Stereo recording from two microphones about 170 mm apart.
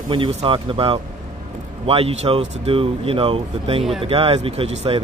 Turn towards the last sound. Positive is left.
turn(degrees=-35)  # may be behind; listen again after turning